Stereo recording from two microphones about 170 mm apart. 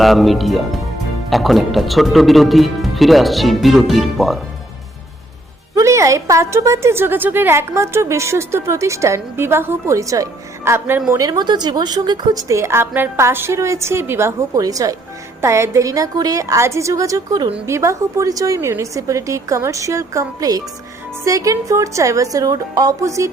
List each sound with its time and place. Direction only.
0.0 s speech: centre (ahead or behind)
5.7 s a woman's voice: 15° right (ahead or behind)